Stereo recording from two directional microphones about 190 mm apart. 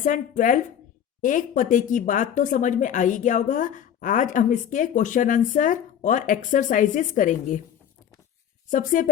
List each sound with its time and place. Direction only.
0.0 s a woman's voice: 40° left (ahead or behind)
8.7 s a woman's voice: 45° left (ahead or behind)